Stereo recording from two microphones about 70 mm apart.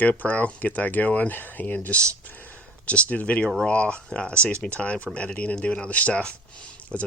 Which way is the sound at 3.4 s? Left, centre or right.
Centre.